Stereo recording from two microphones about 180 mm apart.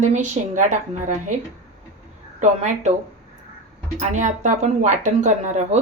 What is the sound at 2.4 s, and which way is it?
Speech, 40° right (ahead or behind).